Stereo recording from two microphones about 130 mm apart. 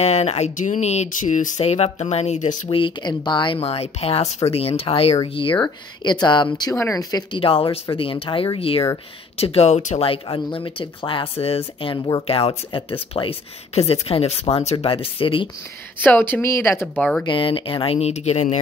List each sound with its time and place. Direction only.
0.0 s speech: 55° left (ahead or behind); by 1.5 s 75° left (ahead or behind)
1.6 s speech: 55° left (ahead or behind)
2.7 s speech: 40° left (ahead or behind)
6.7 s speech: 25° left (ahead or behind)
7.3 s speech: 45° left (ahead or behind)
16.0 s speech: 15° left (ahead or behind)
17.2 s speech: 40° left (ahead or behind); by 18.6 s 60° left (ahead or behind)